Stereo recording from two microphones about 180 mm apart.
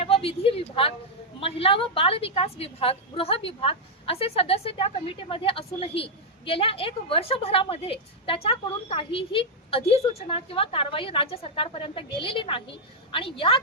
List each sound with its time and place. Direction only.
0.0 s a woman's voice: 30° left (ahead or behind)